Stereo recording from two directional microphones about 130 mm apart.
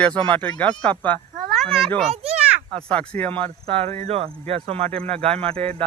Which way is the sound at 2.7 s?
5° left (ahead or behind).